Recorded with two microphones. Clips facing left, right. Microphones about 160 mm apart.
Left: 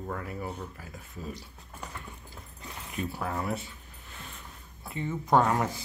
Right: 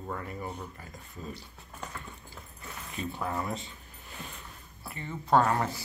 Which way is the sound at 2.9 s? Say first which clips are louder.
Left 1 dB; 5° left (ahead or behind).